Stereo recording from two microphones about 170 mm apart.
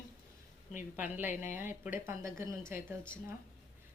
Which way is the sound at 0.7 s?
10° right (ahead or behind).